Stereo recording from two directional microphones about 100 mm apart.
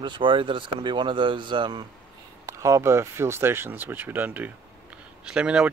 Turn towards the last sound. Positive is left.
turn(degrees=-10)  # may be behind; listen again after turning